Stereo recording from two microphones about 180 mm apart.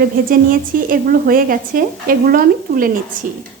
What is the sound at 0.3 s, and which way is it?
Speech, 50° right (ahead or behind).